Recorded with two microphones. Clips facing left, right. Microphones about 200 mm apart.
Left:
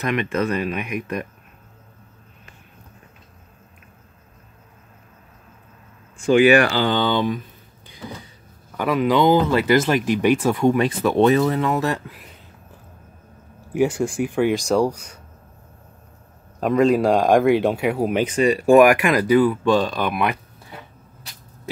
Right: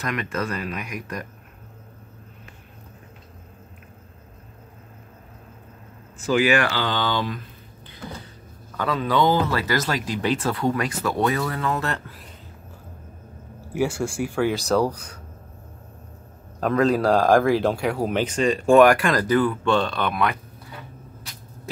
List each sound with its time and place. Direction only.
0.0 s speech: 15° left (ahead or behind)
6.2 s speech: 30° left (ahead or behind)
8.7 s speech: 15° left (ahead or behind)
13.7 s speech: 20° left (ahead or behind)
16.5 s speech: 10° left (ahead or behind)